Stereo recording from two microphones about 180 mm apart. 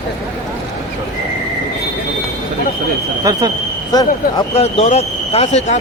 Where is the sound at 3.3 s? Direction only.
20° right (ahead or behind).